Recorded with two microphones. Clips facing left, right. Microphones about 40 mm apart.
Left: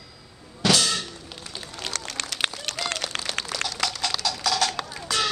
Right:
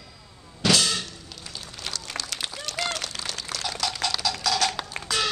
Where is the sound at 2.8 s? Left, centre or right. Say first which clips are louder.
Left 3 dB; left.